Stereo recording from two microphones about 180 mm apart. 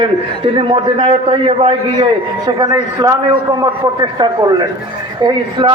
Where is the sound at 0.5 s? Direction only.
30° right (ahead or behind).